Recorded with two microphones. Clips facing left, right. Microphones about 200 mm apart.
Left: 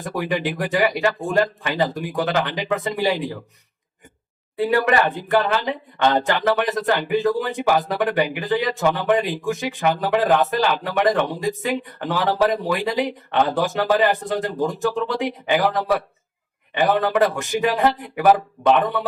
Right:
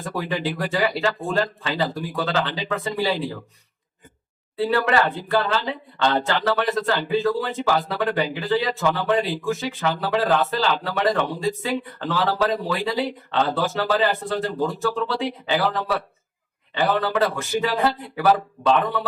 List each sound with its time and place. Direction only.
0.0 s speech: 15° left (ahead or behind)
4.5 s speech: 15° left (ahead or behind)